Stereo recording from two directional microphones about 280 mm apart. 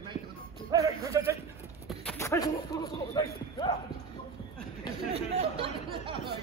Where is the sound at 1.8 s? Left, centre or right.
Centre.